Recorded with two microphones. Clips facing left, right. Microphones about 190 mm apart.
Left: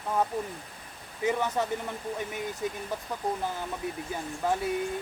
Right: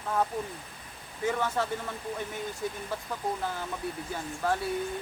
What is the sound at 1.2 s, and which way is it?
Speech, 20° left (ahead or behind).